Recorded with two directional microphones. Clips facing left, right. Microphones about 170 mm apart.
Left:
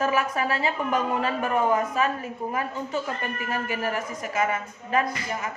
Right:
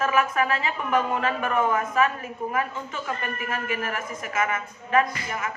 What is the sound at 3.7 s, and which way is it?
A woman's voice, 35° left (ahead or behind).